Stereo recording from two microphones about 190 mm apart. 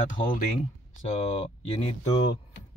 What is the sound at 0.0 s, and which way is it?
Speech, 45° left (ahead or behind).